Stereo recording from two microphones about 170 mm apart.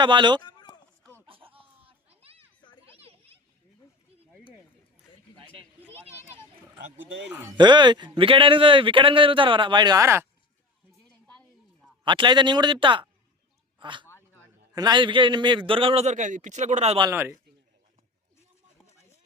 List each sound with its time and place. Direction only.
0.0 s a man's voice: 25° right (ahead or behind)
0.4 s run: 25° left (ahead or behind)
1.3 s baby laughter: 30° right (ahead or behind)
3.0 s children playing: 35° right (ahead or behind)
7.0 s speech: 90° right
7.5 s a man's voice: 25° right (ahead or behind)
12.0 s a man's voice: 30° right (ahead or behind)
13.7 s a sound: 30° right (ahead or behind)
14.8 s a man's voice: 25° right (ahead or behind)
17.1 s speech: 15° right (ahead or behind)